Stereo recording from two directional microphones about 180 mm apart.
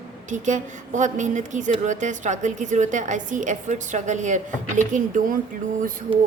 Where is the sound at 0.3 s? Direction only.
45° right (ahead or behind).